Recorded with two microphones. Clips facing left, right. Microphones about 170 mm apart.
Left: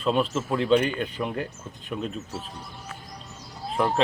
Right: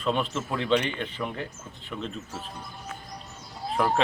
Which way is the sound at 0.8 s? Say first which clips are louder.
Left 5 dB; 45° left (ahead or behind).